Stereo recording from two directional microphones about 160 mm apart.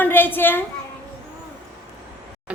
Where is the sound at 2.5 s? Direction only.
5° right (ahead or behind).